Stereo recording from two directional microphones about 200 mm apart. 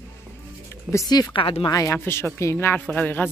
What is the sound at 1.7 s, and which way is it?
A woman's voice, 15° left (ahead or behind).